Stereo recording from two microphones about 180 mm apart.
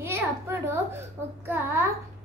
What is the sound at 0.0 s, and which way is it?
A child's voice, 15° right (ahead or behind).